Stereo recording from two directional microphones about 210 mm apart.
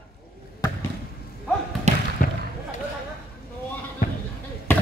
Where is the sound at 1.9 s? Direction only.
30° right (ahead or behind).